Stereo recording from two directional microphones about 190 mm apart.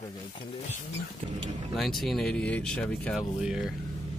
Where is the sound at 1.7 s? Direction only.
Centre (ahead or behind).